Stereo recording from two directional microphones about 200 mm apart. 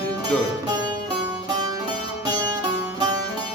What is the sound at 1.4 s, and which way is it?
Music, 20° right (ahead or behind).